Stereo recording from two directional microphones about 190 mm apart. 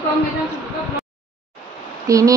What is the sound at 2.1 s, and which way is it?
Speech, 15° right (ahead or behind).